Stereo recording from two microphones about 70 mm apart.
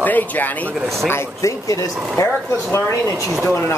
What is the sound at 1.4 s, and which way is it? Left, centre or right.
Speech, left.